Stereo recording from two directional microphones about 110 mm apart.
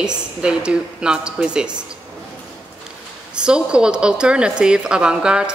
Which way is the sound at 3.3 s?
10° right (ahead or behind).